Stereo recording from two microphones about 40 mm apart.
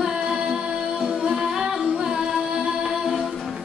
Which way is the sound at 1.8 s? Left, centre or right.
Centre.